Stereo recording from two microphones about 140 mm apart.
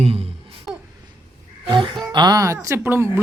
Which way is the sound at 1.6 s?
40° right (ahead or behind).